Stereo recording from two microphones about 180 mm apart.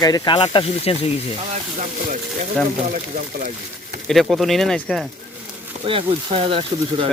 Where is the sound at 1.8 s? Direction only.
40° right (ahead or behind).